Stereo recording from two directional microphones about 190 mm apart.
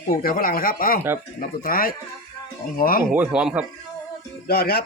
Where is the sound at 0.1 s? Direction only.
50° left (ahead or behind).